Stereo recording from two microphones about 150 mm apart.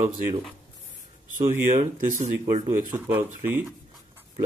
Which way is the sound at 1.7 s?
55° right (ahead or behind).